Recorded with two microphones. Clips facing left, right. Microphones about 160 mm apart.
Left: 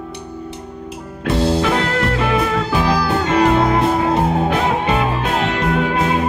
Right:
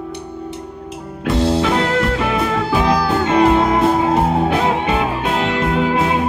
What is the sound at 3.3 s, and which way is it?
Music, 25° right (ahead or behind).